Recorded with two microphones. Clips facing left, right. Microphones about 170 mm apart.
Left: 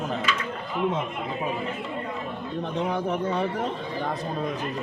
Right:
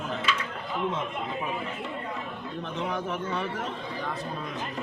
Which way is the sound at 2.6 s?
35° left (ahead or behind).